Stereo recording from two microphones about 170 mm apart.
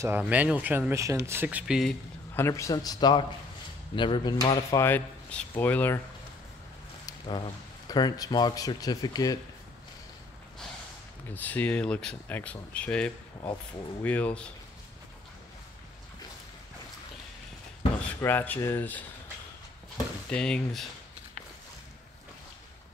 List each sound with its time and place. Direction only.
0.0 s speech: 10° right (ahead or behind)
2.3 s speech: 15° left (ahead or behind)
7.1 s a sound: 25° left (ahead or behind)
7.9 s speech: 25° left (ahead or behind)
11.2 s speech: 10° left (ahead or behind)
18.2 s speech: 10° left (ahead or behind)
20.2 s speech: 5° left (ahead or behind)